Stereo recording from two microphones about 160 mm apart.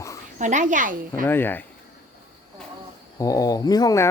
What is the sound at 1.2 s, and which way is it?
Speech, 15° left (ahead or behind).